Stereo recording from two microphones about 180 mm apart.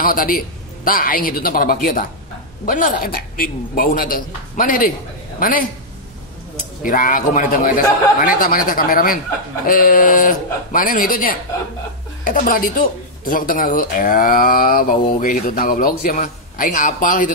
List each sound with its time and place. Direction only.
0.0 s speech: 50° left (ahead or behind)
6.8 s speech: 50° left (ahead or behind)